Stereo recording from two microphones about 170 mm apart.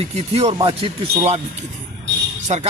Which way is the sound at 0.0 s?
40° right (ahead or behind).